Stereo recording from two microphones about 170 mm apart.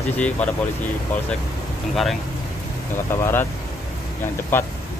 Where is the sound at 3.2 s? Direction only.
15° left (ahead or behind).